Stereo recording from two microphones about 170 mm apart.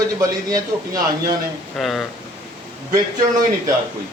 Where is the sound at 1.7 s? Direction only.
Centre (ahead or behind).